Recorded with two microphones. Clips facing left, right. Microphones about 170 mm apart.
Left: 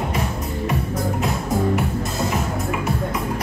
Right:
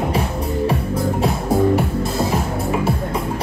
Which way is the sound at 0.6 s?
30° right (ahead or behind).